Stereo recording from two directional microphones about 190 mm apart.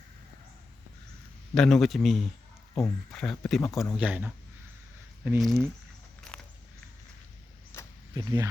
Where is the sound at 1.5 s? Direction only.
5° left (ahead or behind).